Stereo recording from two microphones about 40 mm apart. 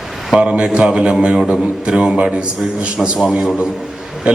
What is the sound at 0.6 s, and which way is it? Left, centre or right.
A man's voice, right.